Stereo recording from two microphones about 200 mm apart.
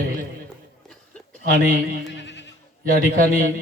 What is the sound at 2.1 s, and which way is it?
Bleat, 60° left (ahead or behind).